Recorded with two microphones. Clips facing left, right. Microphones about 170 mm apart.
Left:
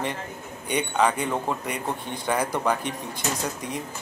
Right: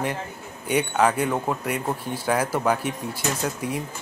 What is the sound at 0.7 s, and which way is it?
Speech, 5° right (ahead or behind).